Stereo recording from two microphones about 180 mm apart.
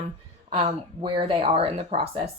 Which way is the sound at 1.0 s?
30° right (ahead or behind).